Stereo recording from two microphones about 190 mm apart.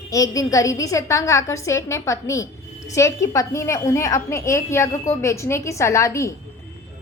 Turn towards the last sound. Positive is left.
turn(degrees=15)  # may be behind; listen again after turning